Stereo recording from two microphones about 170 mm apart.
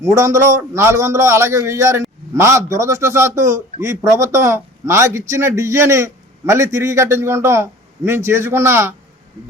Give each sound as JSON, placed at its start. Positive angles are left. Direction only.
{"t": 0.0, "sound": "a man's voice", "side_deg": -20}